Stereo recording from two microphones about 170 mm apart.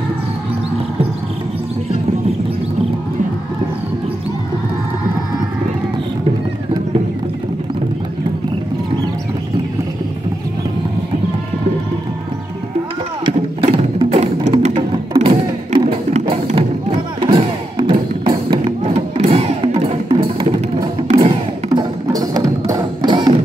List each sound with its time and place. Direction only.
13.7 s music: 35° right (ahead or behind)
21.6 s music: 20° right (ahead or behind)